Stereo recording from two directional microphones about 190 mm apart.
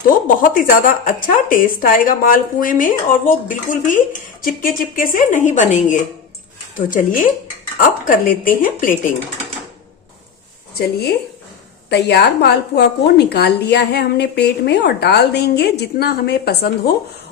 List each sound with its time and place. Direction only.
0.3 s speech: 45° left (ahead or behind)
11.9 s a woman's voice: 60° left (ahead or behind)